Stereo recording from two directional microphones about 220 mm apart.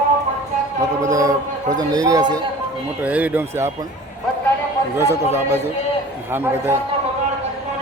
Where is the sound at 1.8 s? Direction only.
15° right (ahead or behind).